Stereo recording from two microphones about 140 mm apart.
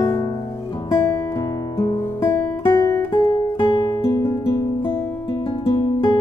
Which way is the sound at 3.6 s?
30° left (ahead or behind).